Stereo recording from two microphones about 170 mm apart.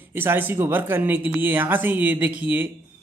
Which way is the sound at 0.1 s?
10° right (ahead or behind).